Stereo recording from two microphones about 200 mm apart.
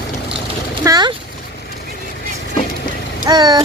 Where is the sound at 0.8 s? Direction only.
20° right (ahead or behind).